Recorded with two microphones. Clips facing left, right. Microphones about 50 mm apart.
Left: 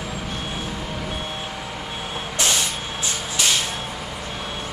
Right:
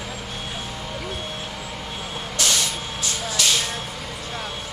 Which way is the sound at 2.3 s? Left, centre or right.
Left.